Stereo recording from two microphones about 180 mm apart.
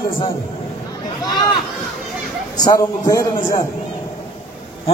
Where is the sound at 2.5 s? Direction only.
20° left (ahead or behind).